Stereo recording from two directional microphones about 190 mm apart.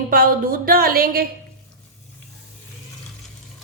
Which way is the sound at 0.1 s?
50° right (ahead or behind).